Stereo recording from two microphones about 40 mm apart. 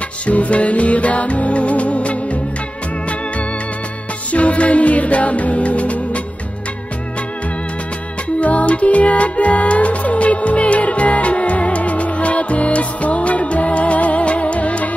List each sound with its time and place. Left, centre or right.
0.3 s music: left
4.3 s music: left
8.4 s music: left